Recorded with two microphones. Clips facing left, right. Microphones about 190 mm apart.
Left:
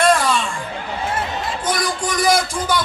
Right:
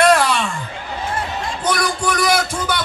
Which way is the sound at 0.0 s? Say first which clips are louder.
Right 2 dB; 65° right (ahead or behind).